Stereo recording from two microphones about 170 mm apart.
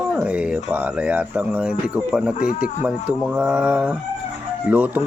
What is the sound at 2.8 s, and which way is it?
Speech, 10° right (ahead or behind).